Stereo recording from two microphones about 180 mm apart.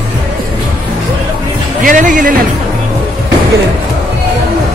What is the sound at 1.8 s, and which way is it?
Speech, 45° right (ahead or behind).